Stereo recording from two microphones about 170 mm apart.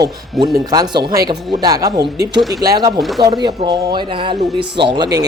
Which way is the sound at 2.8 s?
20° right (ahead or behind).